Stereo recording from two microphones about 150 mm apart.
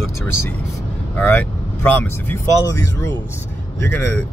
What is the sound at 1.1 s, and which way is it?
Speech, 10° left (ahead or behind).